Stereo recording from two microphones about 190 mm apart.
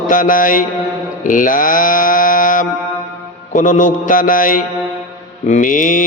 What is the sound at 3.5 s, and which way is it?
Mantra, 40° left (ahead or behind).